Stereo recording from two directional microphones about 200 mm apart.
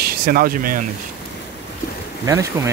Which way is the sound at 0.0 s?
45° right (ahead or behind).